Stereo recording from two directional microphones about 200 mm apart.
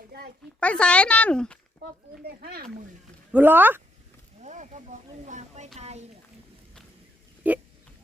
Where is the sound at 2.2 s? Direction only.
50° right (ahead or behind).